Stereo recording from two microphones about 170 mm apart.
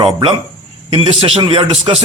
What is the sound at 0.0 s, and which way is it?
A man's voice, 30° right (ahead or behind).